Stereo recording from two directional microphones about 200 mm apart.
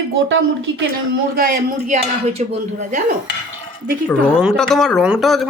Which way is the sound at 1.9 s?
30° right (ahead or behind).